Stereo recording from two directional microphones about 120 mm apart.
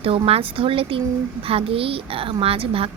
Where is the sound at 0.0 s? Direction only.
50° right (ahead or behind).